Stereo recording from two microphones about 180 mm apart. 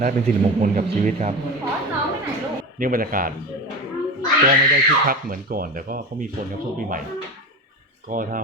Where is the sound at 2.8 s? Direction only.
50° right (ahead or behind).